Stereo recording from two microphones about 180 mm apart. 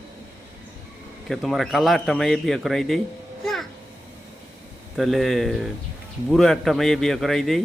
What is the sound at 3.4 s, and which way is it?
Music, centre (ahead or behind).